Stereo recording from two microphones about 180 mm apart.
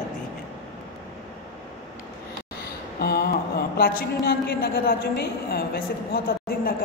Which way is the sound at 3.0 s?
60° left (ahead or behind).